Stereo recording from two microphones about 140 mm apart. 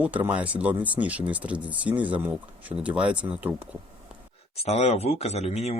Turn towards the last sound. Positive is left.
turn(degrees=50)  # may be behind; listen again after turning